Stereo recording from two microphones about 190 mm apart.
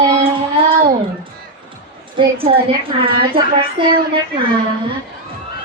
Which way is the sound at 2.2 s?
30° right (ahead or behind).